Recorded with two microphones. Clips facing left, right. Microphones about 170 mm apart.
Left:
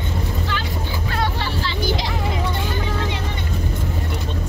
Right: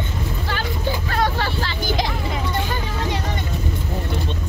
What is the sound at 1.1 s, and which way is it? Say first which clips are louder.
Vehicle: right 1 dB; 45° right (ahead or behind).